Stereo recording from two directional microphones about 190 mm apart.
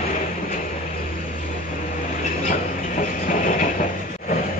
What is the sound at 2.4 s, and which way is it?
Train, 45° left (ahead or behind).